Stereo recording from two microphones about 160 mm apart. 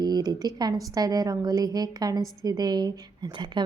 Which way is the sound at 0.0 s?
25° right (ahead or behind).